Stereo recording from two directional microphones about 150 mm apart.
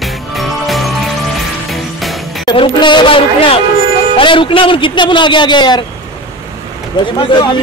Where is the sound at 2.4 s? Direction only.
35° left (ahead or behind).